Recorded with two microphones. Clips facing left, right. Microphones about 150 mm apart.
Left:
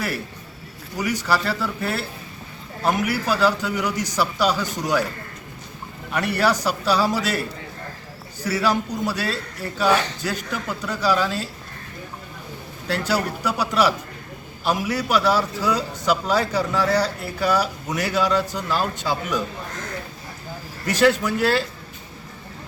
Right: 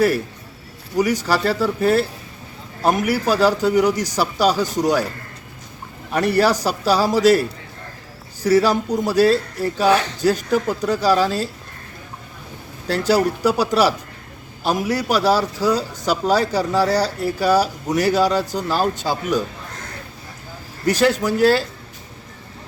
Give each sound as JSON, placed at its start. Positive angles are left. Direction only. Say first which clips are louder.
{"t": 0.9, "sound": "a man's voice", "louder": "right 4 dB", "side_deg": -40}
{"t": 6.1, "sound": "a man's voice", "louder": "right 4 dB", "side_deg": -35}
{"t": 8.4, "sound": "a man's voice", "louder": "right 6 dB", "side_deg": -40}
{"t": 12.9, "sound": "a man's voice", "louder": "right 6 dB", "side_deg": -40}
{"t": 20.8, "sound": "a man's voice", "louder": "right 1 dB", "side_deg": -35}